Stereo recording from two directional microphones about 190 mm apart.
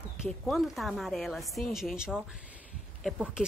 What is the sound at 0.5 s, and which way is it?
Speech, centre (ahead or behind).